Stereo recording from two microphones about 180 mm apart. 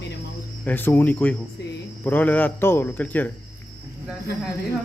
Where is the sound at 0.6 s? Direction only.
10° left (ahead or behind).